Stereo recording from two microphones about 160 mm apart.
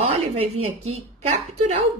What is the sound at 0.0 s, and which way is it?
A woman's voice, 40° right (ahead or behind).